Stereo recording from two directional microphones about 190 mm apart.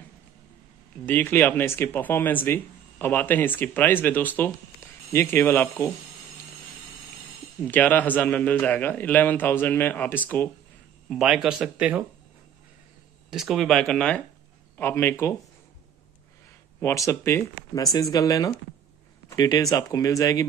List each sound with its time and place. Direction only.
1.0 s speech: 10° left (ahead or behind)
7.6 s speech: 10° left (ahead or behind)
11.1 s speech: centre (ahead or behind)
13.3 s speech: centre (ahead or behind)
16.8 s speech: 15° left (ahead or behind)